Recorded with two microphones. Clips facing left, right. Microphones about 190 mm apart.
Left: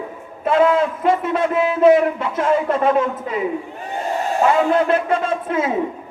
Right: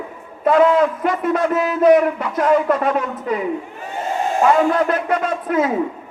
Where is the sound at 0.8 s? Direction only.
25° left (ahead or behind).